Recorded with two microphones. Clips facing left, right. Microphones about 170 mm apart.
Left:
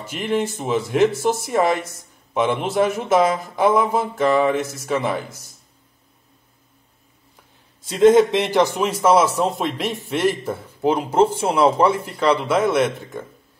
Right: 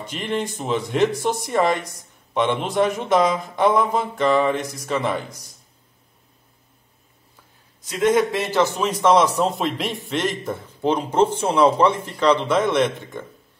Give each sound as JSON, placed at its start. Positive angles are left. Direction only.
{"t": 0.0, "sound": "speech", "side_deg": 5}
{"t": 7.8, "sound": "a man's voice", "side_deg": 25}